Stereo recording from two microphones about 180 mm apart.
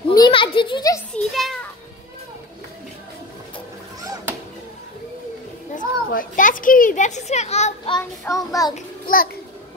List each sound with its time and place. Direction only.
0.1 s a sound: 25° left (ahead or behind)
1.1 s children playing: centre (ahead or behind)
4.0 s a sound: 20° right (ahead or behind)
5.8 s children playing: 45° left (ahead or behind)
8.0 s child singing: 20° left (ahead or behind)
8.7 s a child's voice: 50° left (ahead or behind)